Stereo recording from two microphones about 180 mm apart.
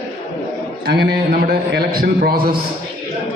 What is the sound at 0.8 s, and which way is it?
A man's voice, 65° right (ahead or behind).